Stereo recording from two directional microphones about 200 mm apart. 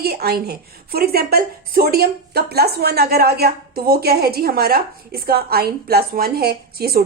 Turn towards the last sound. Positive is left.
turn(degrees=-50)  # may be behind; listen again after turning